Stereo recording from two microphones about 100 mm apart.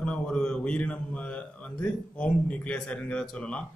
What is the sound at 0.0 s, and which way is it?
A man's voice, 10° left (ahead or behind).